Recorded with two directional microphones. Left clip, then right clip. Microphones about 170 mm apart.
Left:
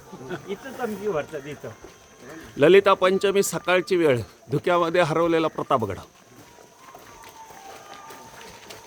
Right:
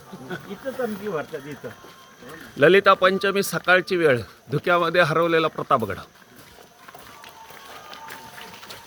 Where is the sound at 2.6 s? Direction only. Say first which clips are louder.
Right 1 dB; 10° left (ahead or behind).